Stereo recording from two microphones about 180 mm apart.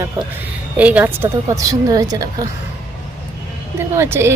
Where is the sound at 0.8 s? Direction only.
10° right (ahead or behind).